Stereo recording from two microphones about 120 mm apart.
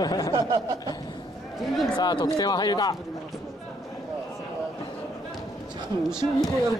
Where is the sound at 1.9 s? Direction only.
35° left (ahead or behind).